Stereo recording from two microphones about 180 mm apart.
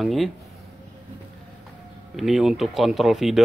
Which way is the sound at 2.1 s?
Centre (ahead or behind).